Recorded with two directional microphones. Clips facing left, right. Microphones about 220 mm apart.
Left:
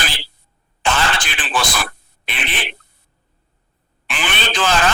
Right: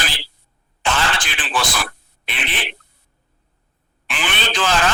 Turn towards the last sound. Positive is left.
turn(degrees=50)  # may be behind; listen again after turning